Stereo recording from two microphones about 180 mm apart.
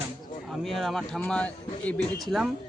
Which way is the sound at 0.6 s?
Centre (ahead or behind).